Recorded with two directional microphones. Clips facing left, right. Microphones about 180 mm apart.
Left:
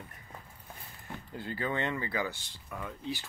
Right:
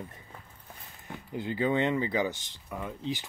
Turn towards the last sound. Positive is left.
turn(degrees=-20)  # may be behind; listen again after turning